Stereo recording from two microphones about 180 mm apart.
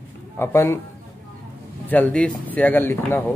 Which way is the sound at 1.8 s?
10° left (ahead or behind).